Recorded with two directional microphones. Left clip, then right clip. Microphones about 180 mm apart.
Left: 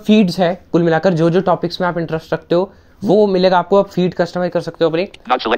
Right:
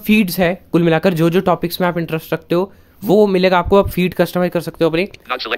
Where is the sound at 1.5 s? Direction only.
50° right (ahead or behind).